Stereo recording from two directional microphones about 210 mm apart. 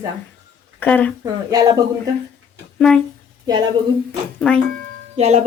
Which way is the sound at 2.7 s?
5° left (ahead or behind).